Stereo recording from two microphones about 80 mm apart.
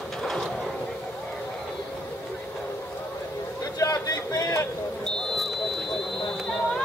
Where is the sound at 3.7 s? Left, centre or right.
Left.